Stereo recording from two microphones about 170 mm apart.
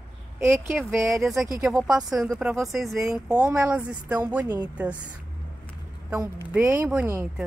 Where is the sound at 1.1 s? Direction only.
Centre (ahead or behind).